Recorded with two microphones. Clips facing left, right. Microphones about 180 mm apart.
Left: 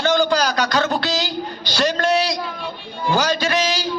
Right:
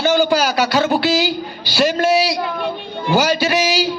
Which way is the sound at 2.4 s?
60° right (ahead or behind).